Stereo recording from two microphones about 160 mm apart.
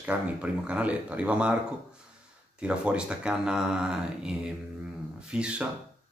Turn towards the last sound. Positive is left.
turn(degrees=-5)  # may be behind; listen again after turning